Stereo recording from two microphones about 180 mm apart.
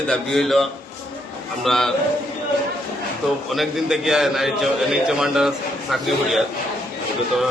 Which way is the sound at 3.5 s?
Centre (ahead or behind).